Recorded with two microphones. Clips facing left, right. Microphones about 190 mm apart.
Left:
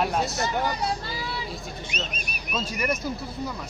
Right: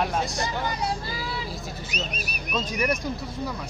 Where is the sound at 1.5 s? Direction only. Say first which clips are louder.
Even; 5° right (ahead or behind).